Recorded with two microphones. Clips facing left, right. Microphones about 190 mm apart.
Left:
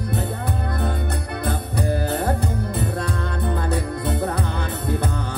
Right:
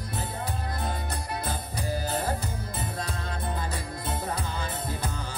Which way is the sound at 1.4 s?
60° left (ahead or behind).